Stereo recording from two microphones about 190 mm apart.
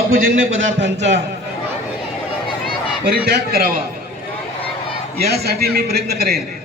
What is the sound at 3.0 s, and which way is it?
Speech, 60° right (ahead or behind).